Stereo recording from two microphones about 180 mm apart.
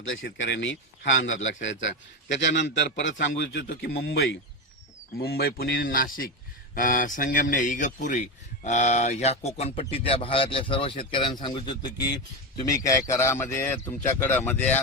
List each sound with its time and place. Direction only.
0.0 s a man's voice: 90° left; by 14.8 s 10° left (ahead or behind)